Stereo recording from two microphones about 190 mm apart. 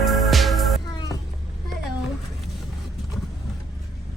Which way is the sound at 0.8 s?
20° left (ahead or behind).